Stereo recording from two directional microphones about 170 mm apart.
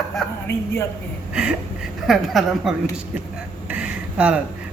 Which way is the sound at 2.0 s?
Centre (ahead or behind).